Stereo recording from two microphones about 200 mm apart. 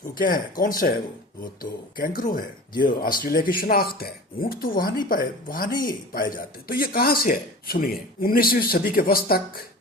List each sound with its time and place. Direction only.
0.1 s speech: 45° left (ahead or behind)